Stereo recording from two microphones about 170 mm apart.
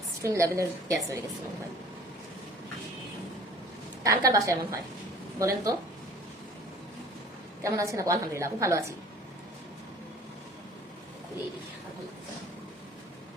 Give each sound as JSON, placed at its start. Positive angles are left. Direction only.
{"t": 0.2, "sound": "a woman's voice", "side_deg": -20}
{"t": 4.0, "sound": "a woman's voice", "side_deg": -20}
{"t": 7.6, "sound": "a woman's voice", "side_deg": -20}